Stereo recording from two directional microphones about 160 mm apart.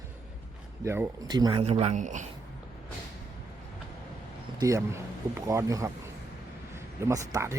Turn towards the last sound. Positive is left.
turn(degrees=-20)  # may be behind; listen again after turning